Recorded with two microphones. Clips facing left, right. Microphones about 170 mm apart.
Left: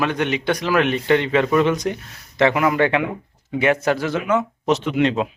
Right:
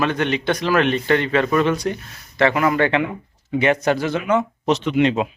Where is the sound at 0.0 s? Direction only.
15° left (ahead or behind); by 5.3 s 5° right (ahead or behind).